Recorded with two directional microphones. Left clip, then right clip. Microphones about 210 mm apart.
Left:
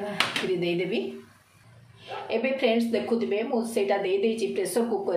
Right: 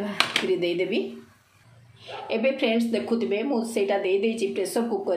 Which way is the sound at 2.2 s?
25° right (ahead or behind).